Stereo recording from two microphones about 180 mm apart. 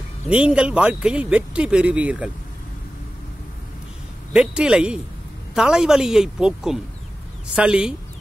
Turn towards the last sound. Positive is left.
turn(degrees=-5)  # may be behind; listen again after turning